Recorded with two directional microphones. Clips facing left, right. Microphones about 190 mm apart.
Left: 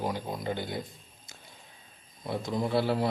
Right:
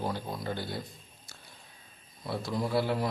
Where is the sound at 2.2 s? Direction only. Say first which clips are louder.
Left 2 dB; 20° left (ahead or behind).